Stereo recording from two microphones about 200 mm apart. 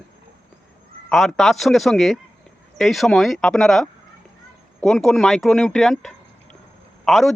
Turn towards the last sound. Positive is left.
turn(degrees=0)  # may be behind; listen again after turning